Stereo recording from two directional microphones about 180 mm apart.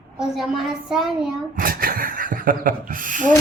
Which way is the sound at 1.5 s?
50° right (ahead or behind).